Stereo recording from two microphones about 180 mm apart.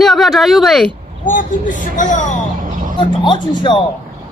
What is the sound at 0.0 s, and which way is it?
Speech, centre (ahead or behind).